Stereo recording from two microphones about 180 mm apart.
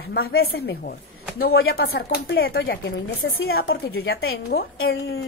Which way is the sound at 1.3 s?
60° left (ahead or behind).